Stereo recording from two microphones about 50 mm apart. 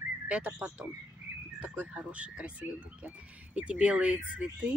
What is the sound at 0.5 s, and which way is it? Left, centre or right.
Speech, right.